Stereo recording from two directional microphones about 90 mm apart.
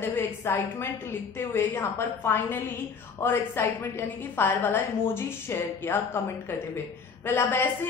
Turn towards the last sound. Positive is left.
turn(degrees=25)  # may be behind; listen again after turning